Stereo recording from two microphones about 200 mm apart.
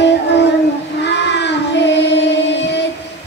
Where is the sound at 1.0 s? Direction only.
60° left (ahead or behind).